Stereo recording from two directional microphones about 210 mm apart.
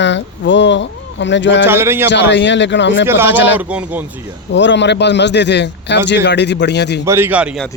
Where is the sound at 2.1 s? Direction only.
55° left (ahead or behind).